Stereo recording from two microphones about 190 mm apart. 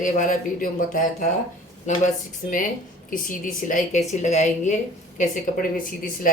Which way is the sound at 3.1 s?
45° left (ahead or behind).